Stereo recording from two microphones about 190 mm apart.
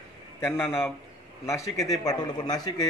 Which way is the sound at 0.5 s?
15° left (ahead or behind).